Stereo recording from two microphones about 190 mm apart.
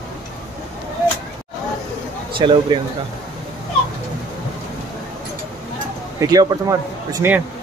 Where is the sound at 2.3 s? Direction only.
25° right (ahead or behind).